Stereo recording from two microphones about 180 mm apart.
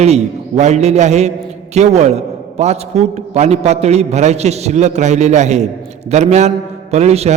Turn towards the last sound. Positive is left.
turn(degrees=-35)  # may be behind; listen again after turning